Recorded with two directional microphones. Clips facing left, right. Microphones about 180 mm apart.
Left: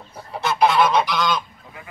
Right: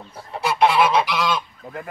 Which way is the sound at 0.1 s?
Centre (ahead or behind).